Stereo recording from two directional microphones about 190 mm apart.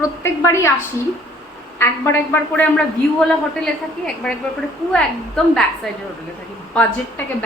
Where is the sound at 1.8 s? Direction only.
10° left (ahead or behind).